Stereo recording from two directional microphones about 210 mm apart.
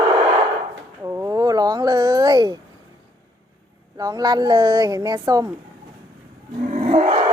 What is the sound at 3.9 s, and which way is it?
A woman's voice, 15° right (ahead or behind).